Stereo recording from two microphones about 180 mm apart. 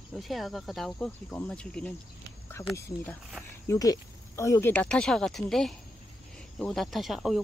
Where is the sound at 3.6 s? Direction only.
15° left (ahead or behind).